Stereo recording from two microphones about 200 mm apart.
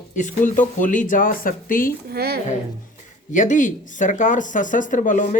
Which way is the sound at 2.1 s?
50° right (ahead or behind).